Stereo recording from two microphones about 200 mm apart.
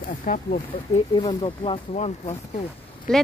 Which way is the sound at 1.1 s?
25° left (ahead or behind).